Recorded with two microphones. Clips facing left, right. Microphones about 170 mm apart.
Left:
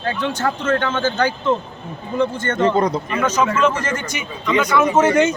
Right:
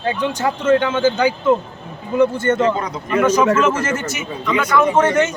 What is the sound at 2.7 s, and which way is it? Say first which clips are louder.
Speech: left 7 dB; 35° left (ahead or behind).